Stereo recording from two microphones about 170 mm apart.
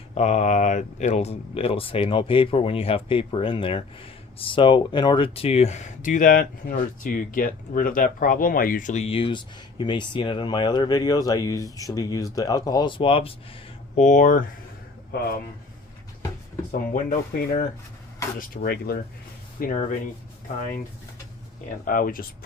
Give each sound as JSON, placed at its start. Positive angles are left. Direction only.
{"t": 0.1, "sound": "speech", "side_deg": 40}
{"t": 13.9, "sound": "speech", "side_deg": 45}
{"t": 16.9, "sound": "speech", "side_deg": 50}
{"t": 18.3, "sound": "speech", "side_deg": 60}
{"t": 19.5, "sound": "speech", "side_deg": 55}
{"t": 21.8, "sound": "speech", "side_deg": 55}